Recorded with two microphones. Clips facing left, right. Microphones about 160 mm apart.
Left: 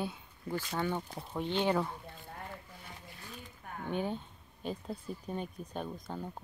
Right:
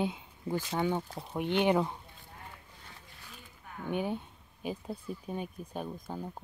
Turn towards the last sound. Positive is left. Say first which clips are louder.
# right 1 dB
turn(degrees=-10)  # may be behind; listen again after turning